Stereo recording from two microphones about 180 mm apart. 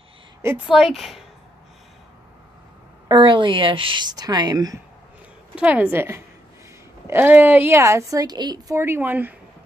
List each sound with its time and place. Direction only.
0.7 s speech: centre (ahead or behind)
3.1 s a woman's voice: 25° right (ahead or behind)
5.6 s a woman's voice: 5° right (ahead or behind)